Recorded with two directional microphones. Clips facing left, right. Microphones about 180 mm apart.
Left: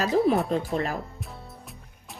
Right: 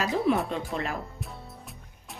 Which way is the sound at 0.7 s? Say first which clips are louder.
Left 4 dB; 35° left (ahead or behind).